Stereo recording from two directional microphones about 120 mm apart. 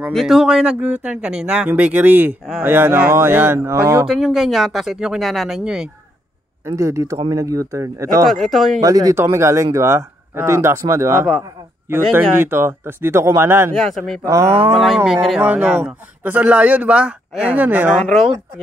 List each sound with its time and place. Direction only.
0.1 s a man's voice: centre (ahead or behind); by 4.0 s 15° right (ahead or behind)
4.1 s speech: centre (ahead or behind)
6.6 s speech: 25° right (ahead or behind)
8.3 s speech: centre (ahead or behind)
8.8 s speech: 30° right (ahead or behind)
13.7 s a man's voice: centre (ahead or behind)